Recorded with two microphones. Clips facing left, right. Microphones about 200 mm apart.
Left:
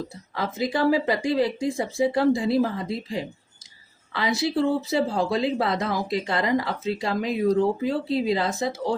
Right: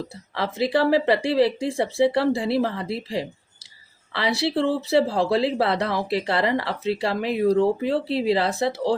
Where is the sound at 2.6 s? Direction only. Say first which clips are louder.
Left 1 dB; 70° right (ahead or behind).